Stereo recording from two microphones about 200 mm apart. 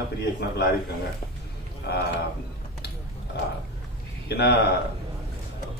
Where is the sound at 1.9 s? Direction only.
55° left (ahead or behind).